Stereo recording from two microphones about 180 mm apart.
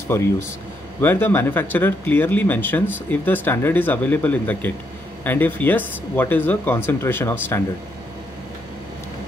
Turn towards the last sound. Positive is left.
turn(degrees=10)  # may be behind; listen again after turning